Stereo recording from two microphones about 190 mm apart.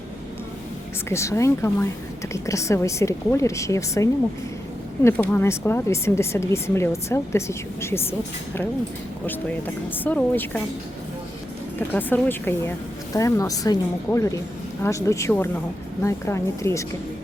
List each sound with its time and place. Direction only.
1.1 s speech: 15° left (ahead or behind)
9.2 s speech: 10° left (ahead or behind)
11.9 s speech: 10° left (ahead or behind)